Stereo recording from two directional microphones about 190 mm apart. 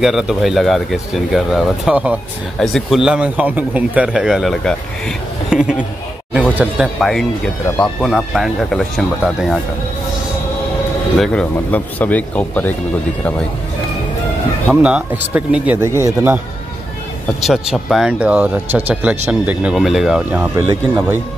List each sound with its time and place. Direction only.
0.0 s speech: centre (ahead or behind)
11.1 s speech: 5° left (ahead or behind)
14.7 s speech: 5° right (ahead or behind)
17.4 s speech: centre (ahead or behind)
20.5 s speech: 20° right (ahead or behind)